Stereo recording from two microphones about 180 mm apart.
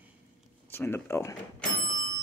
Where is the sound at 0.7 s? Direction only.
15° left (ahead or behind).